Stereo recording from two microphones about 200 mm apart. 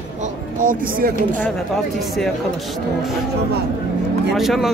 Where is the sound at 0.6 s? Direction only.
45° right (ahead or behind).